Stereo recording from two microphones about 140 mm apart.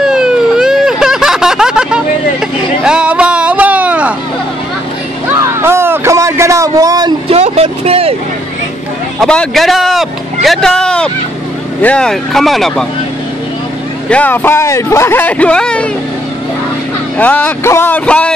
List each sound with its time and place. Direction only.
0.0 s a sound: 5° right (ahead or behind)
5.4 s a sound: 20° right (ahead or behind)
7.2 s vehicle: 45° right (ahead or behind)
9.2 s speech: 5° left (ahead or behind)
14.0 s speech: 10° left (ahead or behind)
17.2 s speech: 10° left (ahead or behind)